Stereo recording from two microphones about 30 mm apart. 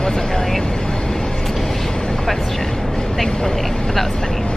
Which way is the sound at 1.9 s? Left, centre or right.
Centre.